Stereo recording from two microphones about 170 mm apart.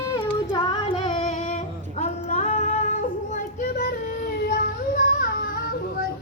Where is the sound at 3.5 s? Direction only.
55° left (ahead or behind).